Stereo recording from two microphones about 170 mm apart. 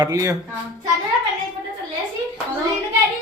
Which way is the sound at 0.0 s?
20° right (ahead or behind).